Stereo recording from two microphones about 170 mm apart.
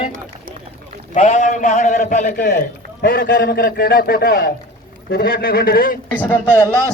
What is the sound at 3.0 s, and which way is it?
Speech, 80° left.